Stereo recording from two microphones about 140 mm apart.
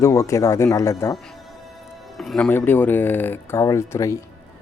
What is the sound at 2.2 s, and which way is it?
Speech, 5° left (ahead or behind).